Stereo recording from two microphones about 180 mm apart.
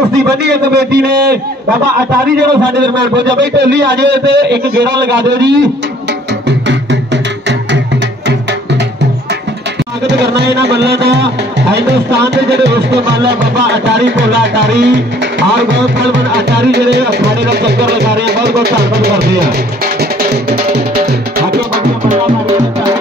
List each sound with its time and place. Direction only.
0.4 s music: 65° right (ahead or behind)
10.0 s music: 70° right (ahead or behind)